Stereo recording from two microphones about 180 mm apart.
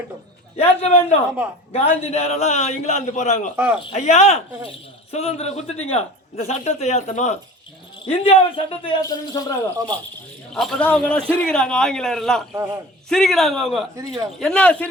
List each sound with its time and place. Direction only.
0.5 s a man's voice: 35° left (ahead or behind)
9.0 s speech: 20° left (ahead or behind)
10.5 s a man's voice: centre (ahead or behind)
13.9 s a man's voice: 20° right (ahead or behind)
14.3 s speech: 5° left (ahead or behind)